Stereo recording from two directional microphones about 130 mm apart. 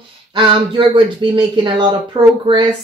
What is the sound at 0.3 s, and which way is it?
Speech, 35° right (ahead or behind).